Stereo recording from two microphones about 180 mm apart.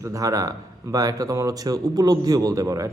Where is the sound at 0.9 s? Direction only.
20° right (ahead or behind).